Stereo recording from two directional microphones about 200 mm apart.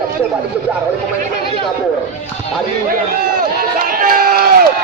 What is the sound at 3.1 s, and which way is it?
Crowd, 45° right (ahead or behind).